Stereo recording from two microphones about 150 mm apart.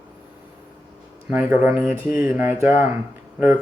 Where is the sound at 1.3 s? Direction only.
10° right (ahead or behind).